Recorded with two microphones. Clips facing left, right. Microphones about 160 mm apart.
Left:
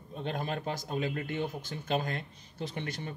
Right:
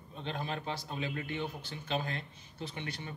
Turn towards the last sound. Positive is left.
turn(degrees=45)  # may be behind; listen again after turning